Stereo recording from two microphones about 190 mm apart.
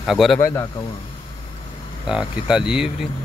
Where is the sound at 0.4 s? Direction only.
15° left (ahead or behind).